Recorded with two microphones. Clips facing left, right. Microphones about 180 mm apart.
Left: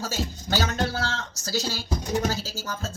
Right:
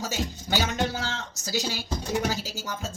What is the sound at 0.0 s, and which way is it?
Speech, 15° right (ahead or behind).